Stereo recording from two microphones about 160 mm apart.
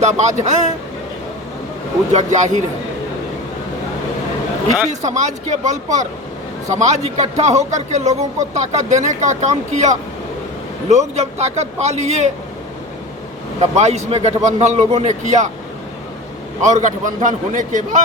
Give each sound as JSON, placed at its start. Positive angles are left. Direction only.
{"t": 0.0, "sound": "speech", "side_deg": -45}
{"t": 2.1, "sound": "speech", "side_deg": -50}
{"t": 4.9, "sound": "speech", "side_deg": -45}
{"t": 13.6, "sound": "speech", "side_deg": -45}
{"t": 16.6, "sound": "speech", "side_deg": -50}